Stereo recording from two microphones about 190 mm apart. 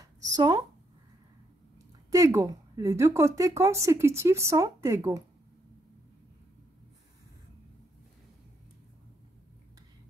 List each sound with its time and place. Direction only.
0.4 s speech: 20° right (ahead or behind)
2.0 s speech: 15° right (ahead or behind)